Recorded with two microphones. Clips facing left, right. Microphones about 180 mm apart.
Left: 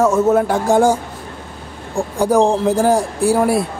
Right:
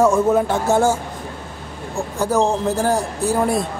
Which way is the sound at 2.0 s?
15° left (ahead or behind).